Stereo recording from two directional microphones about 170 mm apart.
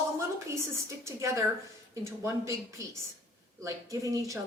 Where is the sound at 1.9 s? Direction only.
20° right (ahead or behind).